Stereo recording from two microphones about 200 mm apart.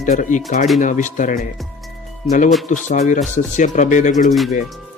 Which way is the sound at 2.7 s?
40° left (ahead or behind).